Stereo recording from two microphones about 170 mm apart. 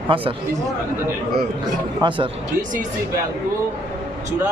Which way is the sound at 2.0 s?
25° right (ahead or behind).